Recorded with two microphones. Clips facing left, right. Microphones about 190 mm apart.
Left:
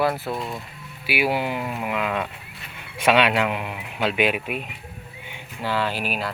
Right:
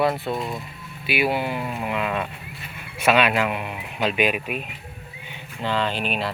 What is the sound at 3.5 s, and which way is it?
Speech, 15° left (ahead or behind).